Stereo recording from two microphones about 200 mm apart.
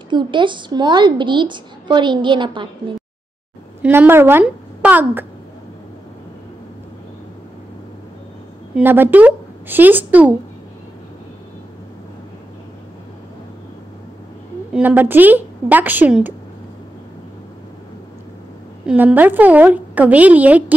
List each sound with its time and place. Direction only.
0.1 s a woman's voice: 25° right (ahead or behind)
3.8 s a woman's voice: 10° right (ahead or behind)
8.7 s a woman's voice: 10° right (ahead or behind)
14.7 s a woman's voice: 10° right (ahead or behind)
18.9 s a woman's voice: 5° right (ahead or behind)